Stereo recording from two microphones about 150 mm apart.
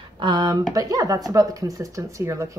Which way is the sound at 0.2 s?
30° right (ahead or behind).